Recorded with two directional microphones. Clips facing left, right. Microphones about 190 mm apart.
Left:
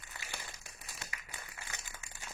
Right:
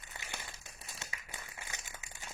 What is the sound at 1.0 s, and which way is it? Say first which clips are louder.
Clapping: even; 20° right (ahead or behind).